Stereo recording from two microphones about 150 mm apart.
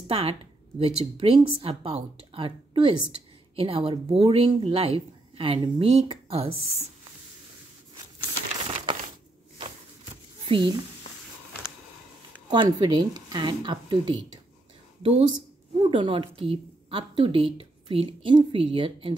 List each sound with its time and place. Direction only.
0.1 s a woman's voice: 40° right (ahead or behind)
10.4 s a sound: 35° right (ahead or behind)
12.4 s a woman's voice: 30° right (ahead or behind)